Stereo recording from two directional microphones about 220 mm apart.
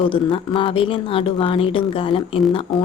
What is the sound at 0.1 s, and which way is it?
Speech, 25° left (ahead or behind).